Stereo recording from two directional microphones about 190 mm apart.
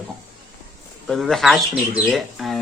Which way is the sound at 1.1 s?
Centre (ahead or behind).